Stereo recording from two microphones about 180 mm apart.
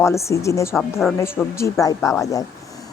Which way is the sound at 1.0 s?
Centre (ahead or behind).